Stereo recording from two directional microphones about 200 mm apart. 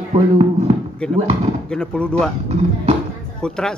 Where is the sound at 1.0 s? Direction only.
5° left (ahead or behind).